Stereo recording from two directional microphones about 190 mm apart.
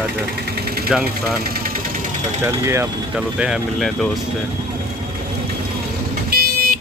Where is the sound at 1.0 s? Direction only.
50° right (ahead or behind).